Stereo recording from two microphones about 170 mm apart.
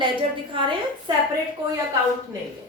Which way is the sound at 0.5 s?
30° right (ahead or behind).